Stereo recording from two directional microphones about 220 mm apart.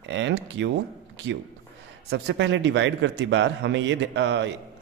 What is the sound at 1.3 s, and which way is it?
A man's voice, 50° right (ahead or behind).